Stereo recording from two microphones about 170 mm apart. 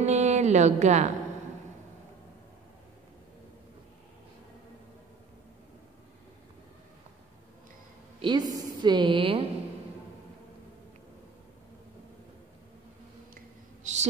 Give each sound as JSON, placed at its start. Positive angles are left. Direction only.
{"t": 0.0, "sound": "speech", "side_deg": -40}
{"t": 8.2, "sound": "a woman's voice", "side_deg": -25}
{"t": 13.9, "sound": "a sound", "side_deg": -45}